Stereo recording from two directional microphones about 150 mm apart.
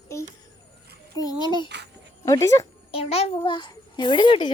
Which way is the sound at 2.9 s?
40° left (ahead or behind).